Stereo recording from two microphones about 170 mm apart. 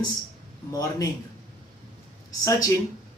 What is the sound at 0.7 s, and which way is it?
Speech, 20° left (ahead or behind).